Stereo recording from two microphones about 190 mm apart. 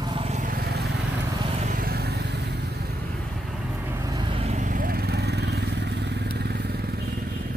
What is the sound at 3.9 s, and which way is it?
Vehicle, 15° right (ahead or behind).